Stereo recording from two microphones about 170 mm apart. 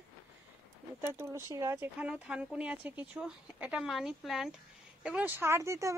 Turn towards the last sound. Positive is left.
turn(degrees=-20)  # may be behind; listen again after turning